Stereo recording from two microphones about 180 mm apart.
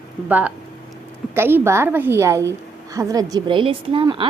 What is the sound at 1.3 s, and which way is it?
A woman's voice, 10° right (ahead or behind).